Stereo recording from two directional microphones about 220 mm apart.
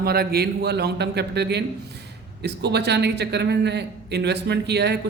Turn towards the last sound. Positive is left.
turn(degrees=-50)  # may be behind; listen again after turning